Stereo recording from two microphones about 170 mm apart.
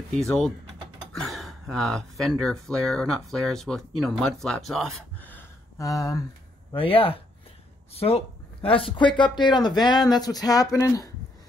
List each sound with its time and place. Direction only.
0.1 s speech: 5° left (ahead or behind); by 6.2 s 20° left (ahead or behind)
6.7 s speech: 35° left (ahead or behind)